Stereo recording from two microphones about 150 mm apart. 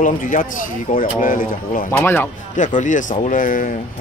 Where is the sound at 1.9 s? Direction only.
10° left (ahead or behind).